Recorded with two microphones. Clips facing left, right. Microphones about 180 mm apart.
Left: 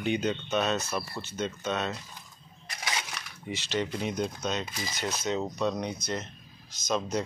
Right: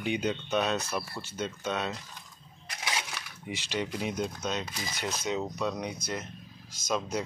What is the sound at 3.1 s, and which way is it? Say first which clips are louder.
Speech: left 1 dB; 10° right (ahead or behind).